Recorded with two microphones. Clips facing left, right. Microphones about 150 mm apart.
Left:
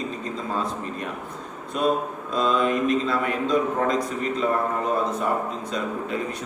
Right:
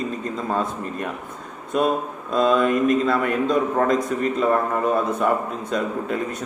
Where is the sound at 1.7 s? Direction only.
50° right (ahead or behind).